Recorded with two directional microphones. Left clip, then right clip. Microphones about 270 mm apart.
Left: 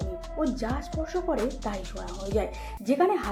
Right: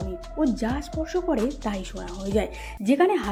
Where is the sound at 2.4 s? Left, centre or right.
Right.